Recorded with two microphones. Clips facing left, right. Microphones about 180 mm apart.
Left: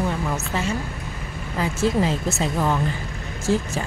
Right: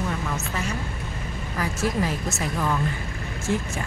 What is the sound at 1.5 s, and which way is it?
Speech, 25° left (ahead or behind).